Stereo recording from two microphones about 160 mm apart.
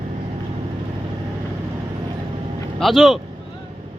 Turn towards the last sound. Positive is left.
turn(degrees=0)  # may be behind; listen again after turning